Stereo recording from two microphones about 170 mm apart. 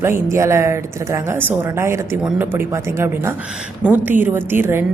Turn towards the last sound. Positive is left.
turn(degrees=-15)  # may be behind; listen again after turning